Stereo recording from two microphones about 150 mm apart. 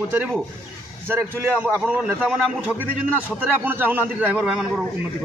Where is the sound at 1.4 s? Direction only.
20° right (ahead or behind).